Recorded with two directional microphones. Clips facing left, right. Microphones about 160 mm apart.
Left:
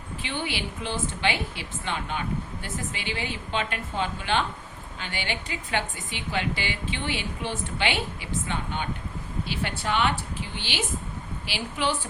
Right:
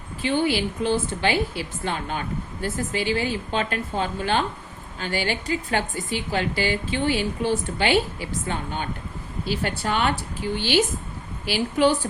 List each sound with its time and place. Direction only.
0.2 s a woman's voice: 40° right (ahead or behind)